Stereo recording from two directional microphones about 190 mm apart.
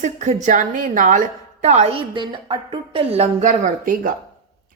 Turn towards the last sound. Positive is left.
turn(degrees=-45)  # may be behind; listen again after turning